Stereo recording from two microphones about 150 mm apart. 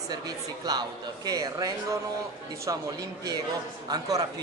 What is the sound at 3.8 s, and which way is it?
Speech, 25° right (ahead or behind).